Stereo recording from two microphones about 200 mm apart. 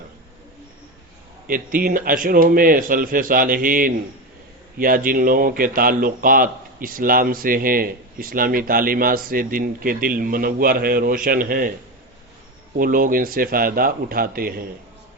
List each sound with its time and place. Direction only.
1.5 s speech: 45° right (ahead or behind)
12.7 s speech: 45° right (ahead or behind)